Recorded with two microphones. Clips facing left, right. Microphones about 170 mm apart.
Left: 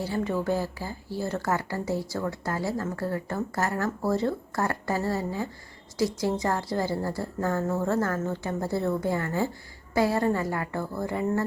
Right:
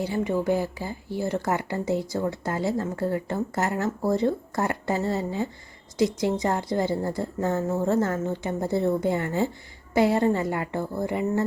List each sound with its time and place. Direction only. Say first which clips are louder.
0.0 s a woman's voice: right 3 dB; 15° right (ahead or behind)